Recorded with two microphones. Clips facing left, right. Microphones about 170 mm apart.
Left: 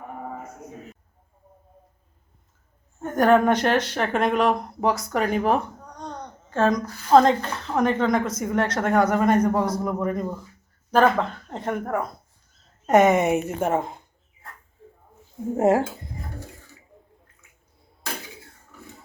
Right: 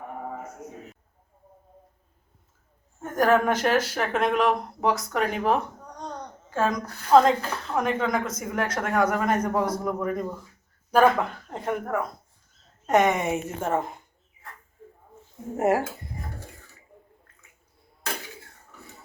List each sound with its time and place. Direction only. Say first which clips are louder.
3.0 s speech: left 3 dB; 5° right (ahead or behind)
11.5 s speech: left 1 dB; 5° right (ahead or behind)
13.1 s speech: left 6 dB; 60° left (ahead or behind)
13.6 s a woman's voice: left 3 dB; 15° left (ahead or behind)
15.5 s speech: left 3 dB; 25° left (ahead or behind)